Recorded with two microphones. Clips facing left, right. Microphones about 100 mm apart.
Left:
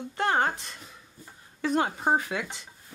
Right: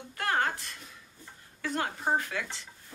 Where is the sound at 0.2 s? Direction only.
25° left (ahead or behind).